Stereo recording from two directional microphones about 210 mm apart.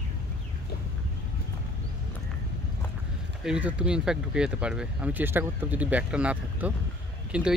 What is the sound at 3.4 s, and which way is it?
Speech, 5° right (ahead or behind).